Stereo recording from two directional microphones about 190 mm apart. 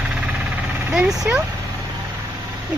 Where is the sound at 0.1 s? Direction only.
5° right (ahead or behind).